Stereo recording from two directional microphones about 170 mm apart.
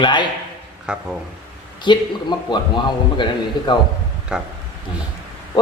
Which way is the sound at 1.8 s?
25° left (ahead or behind).